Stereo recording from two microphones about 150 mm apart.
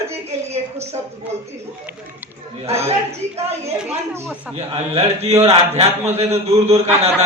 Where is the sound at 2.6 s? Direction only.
45° right (ahead or behind).